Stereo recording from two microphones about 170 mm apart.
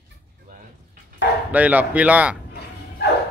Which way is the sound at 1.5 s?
10° right (ahead or behind).